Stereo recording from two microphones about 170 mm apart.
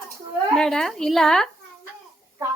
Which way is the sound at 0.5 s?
5° left (ahead or behind).